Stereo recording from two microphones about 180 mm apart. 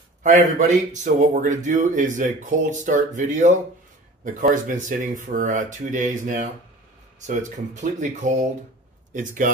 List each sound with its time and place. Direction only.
0.2 s a man's voice: 40° right (ahead or behind)